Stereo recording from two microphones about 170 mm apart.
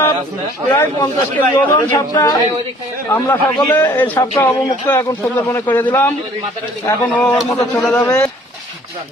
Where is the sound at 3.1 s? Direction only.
10° left (ahead or behind).